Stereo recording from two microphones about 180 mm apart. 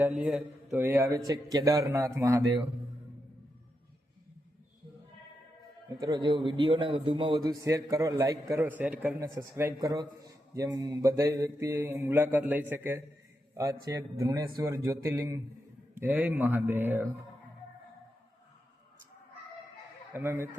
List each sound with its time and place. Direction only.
0.2 s a man's voice: 5° right (ahead or behind)
6.0 s a man's voice: 25° right (ahead or behind)
20.1 s a man's voice: 15° right (ahead or behind)